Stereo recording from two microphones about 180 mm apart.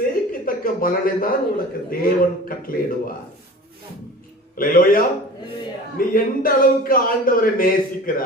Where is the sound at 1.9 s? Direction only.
55° left (ahead or behind).